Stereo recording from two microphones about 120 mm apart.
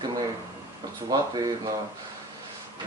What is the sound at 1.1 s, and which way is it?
Speech, 35° right (ahead or behind).